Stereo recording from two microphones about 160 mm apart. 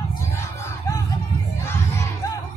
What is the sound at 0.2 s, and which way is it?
Fowl, 20° left (ahead or behind).